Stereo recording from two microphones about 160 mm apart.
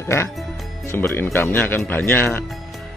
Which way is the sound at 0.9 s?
15° left (ahead or behind).